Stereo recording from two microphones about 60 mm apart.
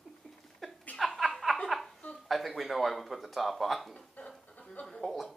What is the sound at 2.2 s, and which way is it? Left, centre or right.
Speech, centre.